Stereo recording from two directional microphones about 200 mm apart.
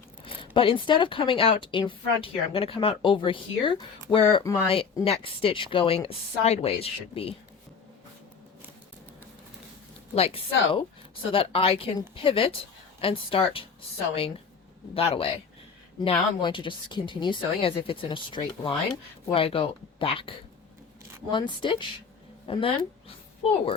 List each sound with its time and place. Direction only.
0.3 s speech: 25° left (ahead or behind)
10.2 s a woman's voice: 30° left (ahead or behind)